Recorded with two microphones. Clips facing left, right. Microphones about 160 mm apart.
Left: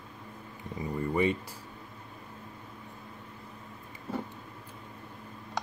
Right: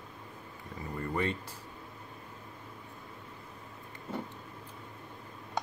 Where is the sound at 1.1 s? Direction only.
10° left (ahead or behind).